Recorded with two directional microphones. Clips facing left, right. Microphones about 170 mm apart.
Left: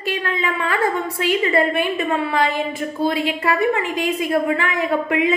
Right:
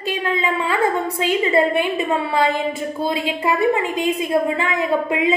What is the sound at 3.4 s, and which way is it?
A woman's voice, 15° right (ahead or behind).